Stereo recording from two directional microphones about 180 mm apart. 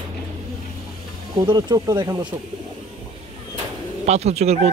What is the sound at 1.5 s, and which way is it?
Speech, 25° right (ahead or behind).